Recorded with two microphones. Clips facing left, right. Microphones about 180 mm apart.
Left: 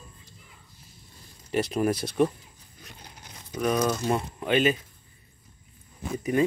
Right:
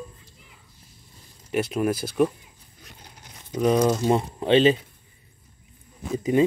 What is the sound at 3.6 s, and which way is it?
Speech, 25° right (ahead or behind).